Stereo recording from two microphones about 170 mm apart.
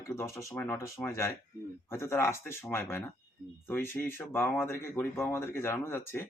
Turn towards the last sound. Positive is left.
turn(degrees=15)  # may be behind; listen again after turning